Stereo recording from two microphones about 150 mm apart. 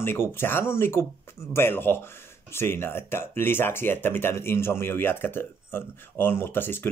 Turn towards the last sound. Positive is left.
turn(degrees=15)  # may be behind; listen again after turning